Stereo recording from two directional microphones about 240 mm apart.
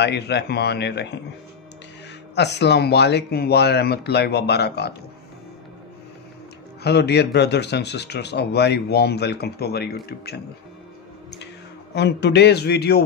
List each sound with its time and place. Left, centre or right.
0.0 s speech: left
2.3 s speech: left
6.8 s speech: left
11.9 s speech: left